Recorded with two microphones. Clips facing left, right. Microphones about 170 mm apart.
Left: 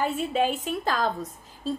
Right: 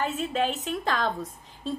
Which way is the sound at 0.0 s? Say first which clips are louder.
Left 2 dB; 10° left (ahead or behind).